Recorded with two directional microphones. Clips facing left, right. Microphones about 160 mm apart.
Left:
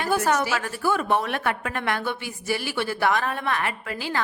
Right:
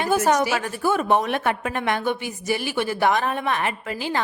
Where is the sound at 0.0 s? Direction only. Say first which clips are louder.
Right 3 dB; 20° right (ahead or behind).